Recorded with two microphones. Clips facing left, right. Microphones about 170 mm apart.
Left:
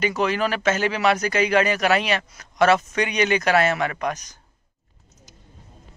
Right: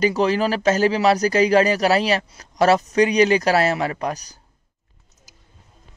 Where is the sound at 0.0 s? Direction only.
35° right (ahead or behind).